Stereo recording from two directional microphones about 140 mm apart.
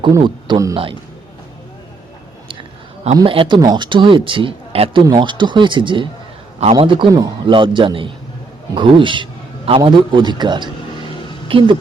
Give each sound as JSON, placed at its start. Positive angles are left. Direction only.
{"t": 0.1, "sound": "a man's voice", "side_deg": -35}
{"t": 2.5, "sound": "a sound", "side_deg": -45}
{"t": 3.2, "sound": "speech", "side_deg": -40}
{"t": 5.0, "sound": "speech", "side_deg": -30}